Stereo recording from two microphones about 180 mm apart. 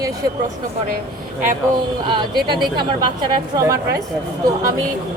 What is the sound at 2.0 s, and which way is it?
A woman's voice, 25° right (ahead or behind).